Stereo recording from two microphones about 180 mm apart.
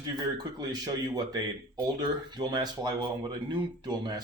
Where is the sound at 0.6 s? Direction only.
20° right (ahead or behind).